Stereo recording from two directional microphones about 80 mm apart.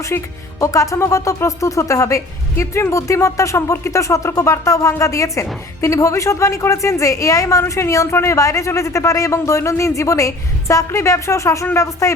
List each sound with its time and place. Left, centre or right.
0.1 s a woman's voice: left